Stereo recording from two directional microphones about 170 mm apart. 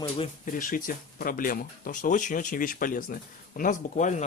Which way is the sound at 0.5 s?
55° left (ahead or behind).